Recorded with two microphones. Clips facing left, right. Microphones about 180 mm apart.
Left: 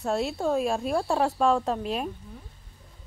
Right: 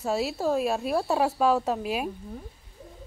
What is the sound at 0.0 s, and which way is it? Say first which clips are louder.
Speech: even; centre (ahead or behind).